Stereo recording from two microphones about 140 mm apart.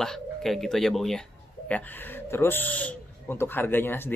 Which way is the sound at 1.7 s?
10° left (ahead or behind).